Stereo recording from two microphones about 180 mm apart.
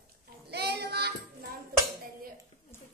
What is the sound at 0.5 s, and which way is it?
Child singing, 65° right (ahead or behind).